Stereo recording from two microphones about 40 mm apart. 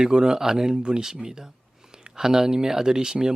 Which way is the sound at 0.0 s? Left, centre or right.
Centre.